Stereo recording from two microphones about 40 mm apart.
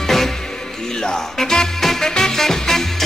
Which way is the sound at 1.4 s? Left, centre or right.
Centre.